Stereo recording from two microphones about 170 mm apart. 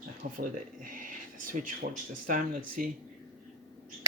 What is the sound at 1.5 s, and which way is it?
Speech, 50° right (ahead or behind).